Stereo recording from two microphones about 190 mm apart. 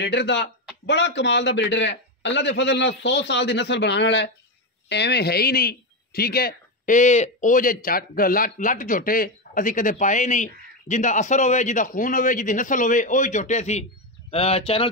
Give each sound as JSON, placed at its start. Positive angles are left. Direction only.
{"t": 0.0, "sound": "a man's voice", "side_deg": 65}